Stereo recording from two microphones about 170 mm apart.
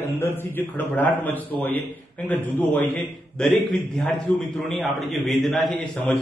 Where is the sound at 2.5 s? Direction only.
10° left (ahead or behind).